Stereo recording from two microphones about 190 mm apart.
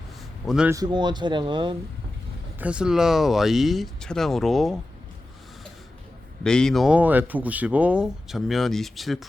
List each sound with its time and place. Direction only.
0.4 s speech: 5° right (ahead or behind)
0.7 s speech: 20° right (ahead or behind)
2.6 s speech: 5° right (ahead or behind)
6.4 s speech: 5° left (ahead or behind)